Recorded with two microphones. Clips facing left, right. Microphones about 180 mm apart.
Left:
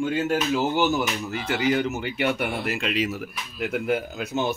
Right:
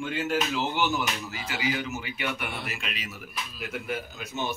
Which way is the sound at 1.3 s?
55° left (ahead or behind).